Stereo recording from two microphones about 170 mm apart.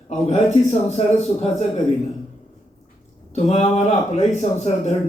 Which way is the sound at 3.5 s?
40° left (ahead or behind).